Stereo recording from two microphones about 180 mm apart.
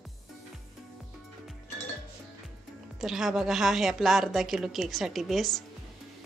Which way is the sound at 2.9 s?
5° right (ahead or behind).